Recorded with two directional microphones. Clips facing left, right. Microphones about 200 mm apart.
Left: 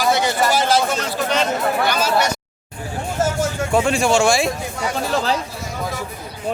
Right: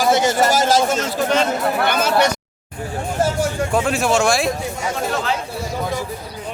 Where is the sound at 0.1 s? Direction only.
45° right (ahead or behind).